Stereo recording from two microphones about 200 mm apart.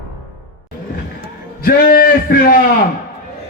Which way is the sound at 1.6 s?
45° left (ahead or behind).